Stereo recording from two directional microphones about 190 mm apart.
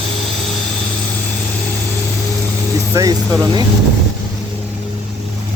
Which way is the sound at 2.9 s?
20° right (ahead or behind).